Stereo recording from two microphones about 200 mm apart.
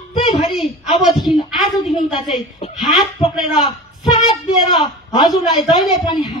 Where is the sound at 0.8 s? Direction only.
20° left (ahead or behind).